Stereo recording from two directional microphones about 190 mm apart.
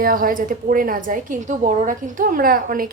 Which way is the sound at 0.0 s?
50° right (ahead or behind).